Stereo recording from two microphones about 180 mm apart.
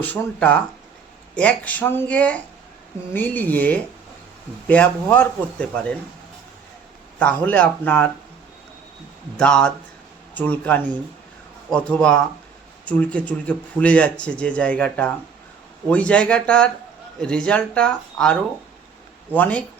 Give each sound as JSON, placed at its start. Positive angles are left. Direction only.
{"t": 0.0, "sound": "speech", "side_deg": 10}
{"t": 7.2, "sound": "speech", "side_deg": 10}
{"t": 9.4, "sound": "speech", "side_deg": 5}